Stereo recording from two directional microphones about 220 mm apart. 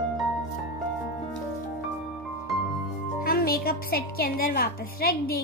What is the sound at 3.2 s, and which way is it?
A woman's voice, 45° left (ahead or behind).